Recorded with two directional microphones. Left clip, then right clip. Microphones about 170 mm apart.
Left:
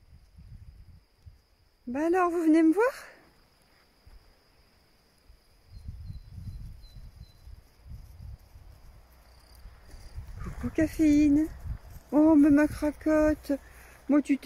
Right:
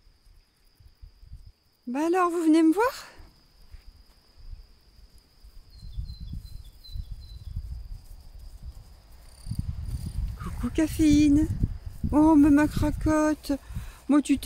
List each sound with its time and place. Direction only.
1.9 s speech: 10° right (ahead or behind)
10.4 s speech: 10° right (ahead or behind)